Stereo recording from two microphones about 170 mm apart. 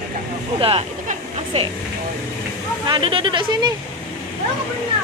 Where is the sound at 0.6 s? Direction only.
35° right (ahead or behind).